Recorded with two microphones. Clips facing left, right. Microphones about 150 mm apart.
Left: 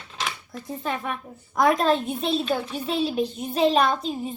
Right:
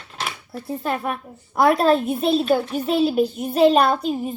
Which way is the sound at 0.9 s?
40° right (ahead or behind).